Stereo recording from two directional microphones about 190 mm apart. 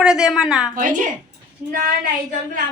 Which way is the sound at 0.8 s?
45° right (ahead or behind).